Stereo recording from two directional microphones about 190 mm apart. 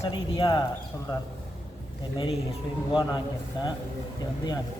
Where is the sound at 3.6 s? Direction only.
25° left (ahead or behind).